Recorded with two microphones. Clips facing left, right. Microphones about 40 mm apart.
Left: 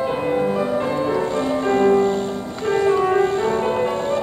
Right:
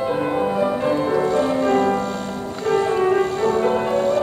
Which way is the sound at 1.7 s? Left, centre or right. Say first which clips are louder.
Left 3 dB; left.